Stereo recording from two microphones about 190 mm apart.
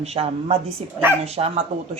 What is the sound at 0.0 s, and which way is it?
A woman's voice, 35° right (ahead or behind).